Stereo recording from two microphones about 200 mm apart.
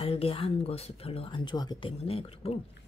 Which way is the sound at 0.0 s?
30° left (ahead or behind).